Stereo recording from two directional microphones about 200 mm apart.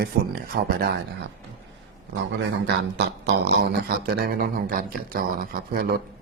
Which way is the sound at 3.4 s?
50° right (ahead or behind).